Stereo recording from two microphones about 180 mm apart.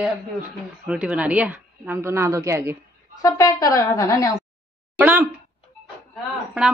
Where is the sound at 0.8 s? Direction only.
5° right (ahead or behind).